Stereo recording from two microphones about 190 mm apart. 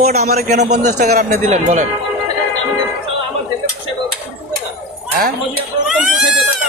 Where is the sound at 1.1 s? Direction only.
55° right (ahead or behind).